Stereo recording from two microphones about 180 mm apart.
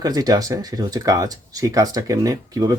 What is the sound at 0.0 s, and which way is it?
Speech, 20° right (ahead or behind).